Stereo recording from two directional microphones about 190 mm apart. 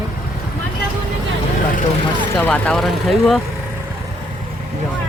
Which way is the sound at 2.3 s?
10° left (ahead or behind).